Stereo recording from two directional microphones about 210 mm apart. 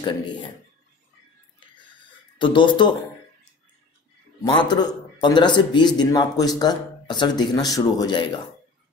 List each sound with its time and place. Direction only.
2.3 s speech: 25° left (ahead or behind)
4.5 s a man's voice: 20° left (ahead or behind)